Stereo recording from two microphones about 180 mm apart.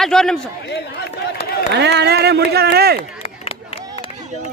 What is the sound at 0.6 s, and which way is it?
Chatter, 65° left (ahead or behind).